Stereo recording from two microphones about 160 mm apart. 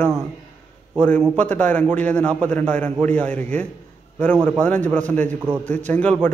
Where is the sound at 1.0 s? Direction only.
10° left (ahead or behind).